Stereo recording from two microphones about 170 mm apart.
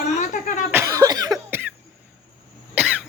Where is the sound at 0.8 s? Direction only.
20° right (ahead or behind).